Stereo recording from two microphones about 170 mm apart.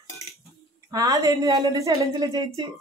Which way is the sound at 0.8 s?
20° right (ahead or behind).